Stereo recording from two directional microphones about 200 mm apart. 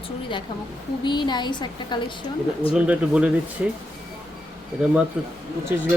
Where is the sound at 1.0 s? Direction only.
20° left (ahead or behind).